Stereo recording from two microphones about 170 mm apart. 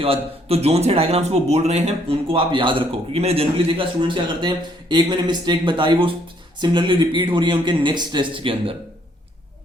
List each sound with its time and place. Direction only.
0.0 s a man's voice: 35° right (ahead or behind)